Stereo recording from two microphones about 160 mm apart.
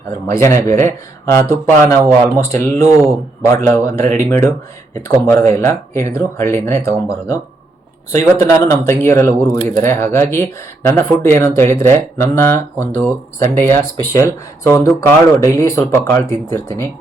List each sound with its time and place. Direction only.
0.3 s speech: 15° left (ahead or behind)
8.2 s speech: 15° left (ahead or behind)